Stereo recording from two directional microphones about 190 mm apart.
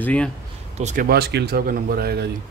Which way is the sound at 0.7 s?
35° right (ahead or behind).